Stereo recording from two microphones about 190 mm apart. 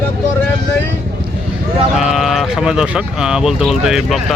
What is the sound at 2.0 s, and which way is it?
Speech, centre (ahead or behind).